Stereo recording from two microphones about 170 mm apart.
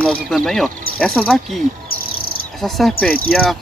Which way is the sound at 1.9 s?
60° left (ahead or behind).